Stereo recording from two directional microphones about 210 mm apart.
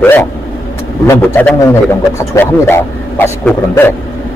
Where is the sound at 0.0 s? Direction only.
10° left (ahead or behind).